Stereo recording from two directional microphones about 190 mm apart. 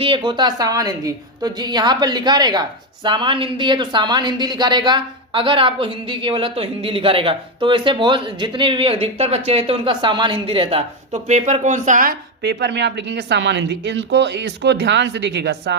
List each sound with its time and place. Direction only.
0.0 s a woman's voice: 25° right (ahead or behind); by 12.1 s 40° right (ahead or behind)
12.4 s speech: 60° right (ahead or behind)